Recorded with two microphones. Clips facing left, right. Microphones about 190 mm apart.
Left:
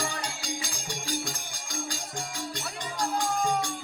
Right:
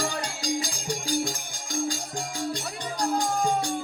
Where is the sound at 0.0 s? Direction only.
40° right (ahead or behind).